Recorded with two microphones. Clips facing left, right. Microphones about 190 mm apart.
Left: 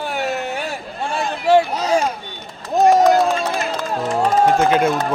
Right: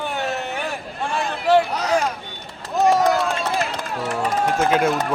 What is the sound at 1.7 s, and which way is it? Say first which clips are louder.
Speech: left 2 dB; 25° left (ahead or behind).